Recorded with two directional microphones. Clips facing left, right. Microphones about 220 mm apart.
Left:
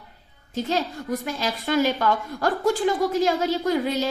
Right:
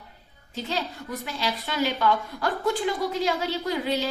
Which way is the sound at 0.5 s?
45° left (ahead or behind).